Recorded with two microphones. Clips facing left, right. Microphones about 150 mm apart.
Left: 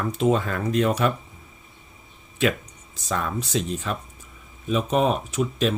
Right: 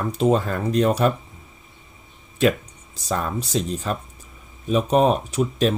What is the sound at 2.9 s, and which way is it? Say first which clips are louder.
Speech: right 2 dB; 35° right (ahead or behind).